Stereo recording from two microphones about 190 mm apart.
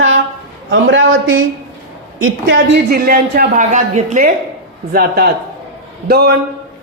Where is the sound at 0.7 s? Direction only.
85° right.